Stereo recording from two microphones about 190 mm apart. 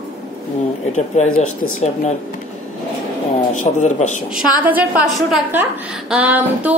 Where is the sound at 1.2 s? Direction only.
40° left (ahead or behind).